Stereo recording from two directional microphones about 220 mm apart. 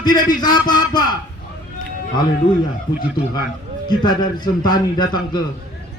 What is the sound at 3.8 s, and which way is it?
A man's voice, 20° left (ahead or behind).